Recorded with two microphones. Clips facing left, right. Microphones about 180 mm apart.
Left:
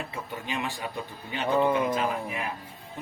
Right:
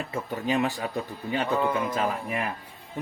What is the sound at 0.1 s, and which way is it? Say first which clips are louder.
Speech: right 7 dB; 40° right (ahead or behind).